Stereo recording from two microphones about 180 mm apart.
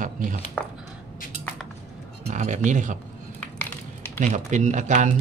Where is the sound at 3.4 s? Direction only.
10° left (ahead or behind).